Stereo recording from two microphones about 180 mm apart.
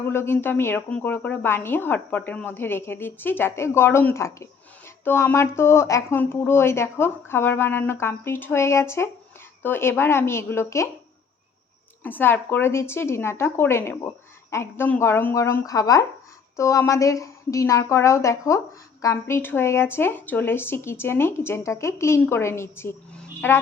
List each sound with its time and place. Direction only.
0.0 s speech: 15° left (ahead or behind)
12.0 s speech: 10° left (ahead or behind)